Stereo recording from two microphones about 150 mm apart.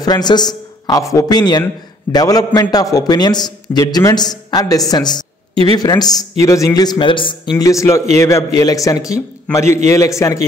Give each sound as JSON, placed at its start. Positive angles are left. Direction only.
{"t": 0.0, "sound": "a man's voice", "side_deg": 30}
{"t": 5.5, "sound": "speech", "side_deg": -40}
{"t": 5.8, "sound": "a man's voice", "side_deg": 25}